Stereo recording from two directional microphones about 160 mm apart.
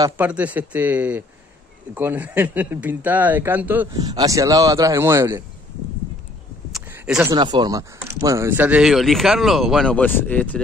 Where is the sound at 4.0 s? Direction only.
25° right (ahead or behind).